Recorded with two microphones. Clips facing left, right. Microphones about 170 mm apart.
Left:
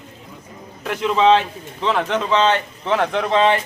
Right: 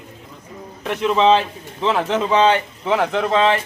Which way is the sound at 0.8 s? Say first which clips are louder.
Even; centre (ahead or behind).